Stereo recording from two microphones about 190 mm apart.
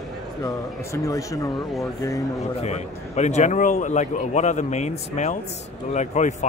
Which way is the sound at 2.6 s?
35° left (ahead or behind).